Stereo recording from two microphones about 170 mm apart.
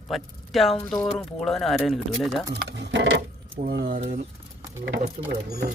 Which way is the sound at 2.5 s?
90° right.